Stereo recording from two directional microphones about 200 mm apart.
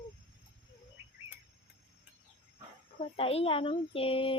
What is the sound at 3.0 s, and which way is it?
A child's voice, 30° left (ahead or behind).